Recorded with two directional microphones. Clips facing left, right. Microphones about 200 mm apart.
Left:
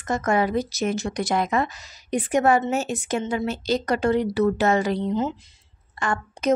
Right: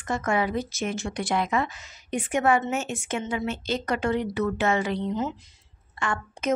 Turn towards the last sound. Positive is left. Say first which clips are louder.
# left 3 dB
turn(degrees=40)  # may be behind; listen again after turning